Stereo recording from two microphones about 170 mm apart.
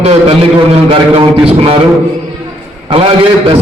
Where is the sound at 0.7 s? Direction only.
35° right (ahead or behind).